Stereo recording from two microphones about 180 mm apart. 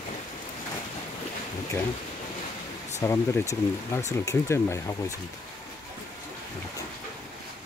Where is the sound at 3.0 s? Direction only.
15° left (ahead or behind).